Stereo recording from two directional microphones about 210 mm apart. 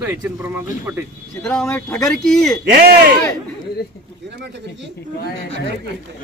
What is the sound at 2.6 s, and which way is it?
Speech, 50° right (ahead or behind).